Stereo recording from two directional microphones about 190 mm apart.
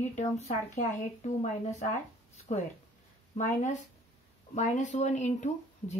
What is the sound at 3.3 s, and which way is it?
Speech, 40° left (ahead or behind).